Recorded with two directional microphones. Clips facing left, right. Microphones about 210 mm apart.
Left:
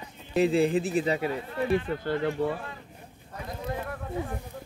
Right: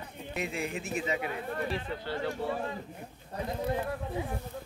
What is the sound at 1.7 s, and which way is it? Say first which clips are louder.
Speech: left 8 dB; 50° left (ahead or behind).